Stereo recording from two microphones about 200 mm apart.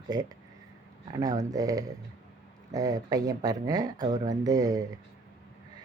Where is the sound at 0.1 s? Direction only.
20° right (ahead or behind).